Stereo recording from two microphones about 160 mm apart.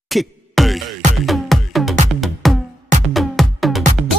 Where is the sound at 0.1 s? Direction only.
Centre (ahead or behind).